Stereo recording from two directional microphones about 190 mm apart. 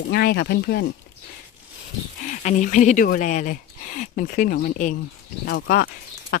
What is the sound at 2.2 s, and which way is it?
Speech, 40° left (ahead or behind).